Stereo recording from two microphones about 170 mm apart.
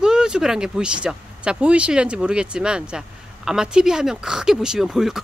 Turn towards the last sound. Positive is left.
turn(degrees=0)  # may be behind; listen again after turning